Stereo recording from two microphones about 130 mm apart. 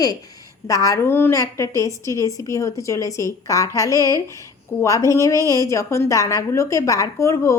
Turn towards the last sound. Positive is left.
turn(degrees=25)  # may be behind; listen again after turning